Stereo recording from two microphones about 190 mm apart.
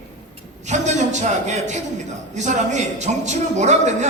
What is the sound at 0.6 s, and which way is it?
A man's voice, 40° right (ahead or behind).